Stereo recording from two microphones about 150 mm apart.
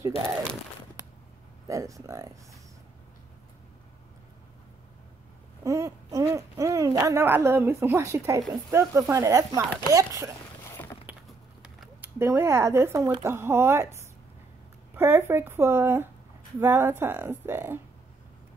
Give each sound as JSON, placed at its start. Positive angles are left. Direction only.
{"t": 1.7, "sound": "speech", "side_deg": -20}
{"t": 5.6, "sound": "a sound", "side_deg": -20}
{"t": 6.6, "sound": "a woman's voice", "side_deg": -25}
{"t": 12.2, "sound": "speech", "side_deg": -15}
{"t": 15.0, "sound": "speech", "side_deg": -15}